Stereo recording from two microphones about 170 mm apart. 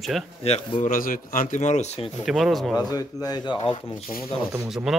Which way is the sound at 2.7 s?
20° left (ahead or behind).